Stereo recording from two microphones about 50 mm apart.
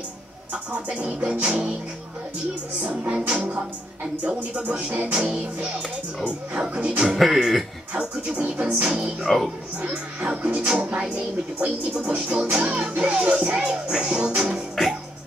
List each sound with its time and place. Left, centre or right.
0.5 s speech: right
2.8 s speech: right
3.2 s speech: centre
7.2 s speech: centre
8.4 s speech: right
9.2 s speech: centre
9.8 s speech: centre
12.4 s music: right
14.5 s music: centre